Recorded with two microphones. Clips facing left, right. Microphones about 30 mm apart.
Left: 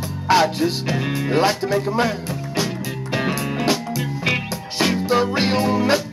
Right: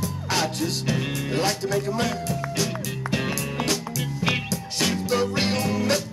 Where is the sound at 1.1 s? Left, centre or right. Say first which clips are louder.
Left 6 dB; left.